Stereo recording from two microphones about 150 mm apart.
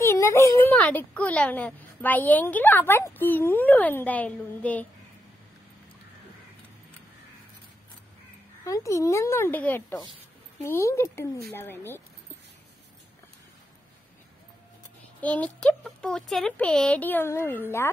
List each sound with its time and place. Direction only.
0.0 s a child's voice: 20° left (ahead or behind)
8.6 s a child's voice: 20° left (ahead or behind)
15.1 s a child's voice: 10° left (ahead or behind)